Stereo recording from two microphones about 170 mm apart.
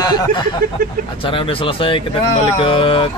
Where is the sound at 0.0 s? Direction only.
25° left (ahead or behind).